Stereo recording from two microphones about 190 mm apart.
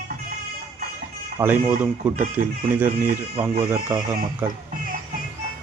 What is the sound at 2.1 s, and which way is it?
Speech, 45° right (ahead or behind).